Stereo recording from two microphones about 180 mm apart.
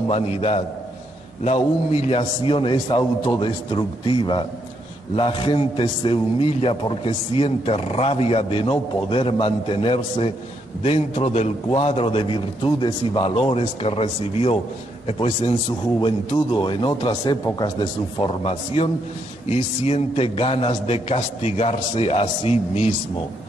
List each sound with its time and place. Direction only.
0.1 s a man's voice: 35° left (ahead or behind)
16.5 s a man's voice: 25° left (ahead or behind)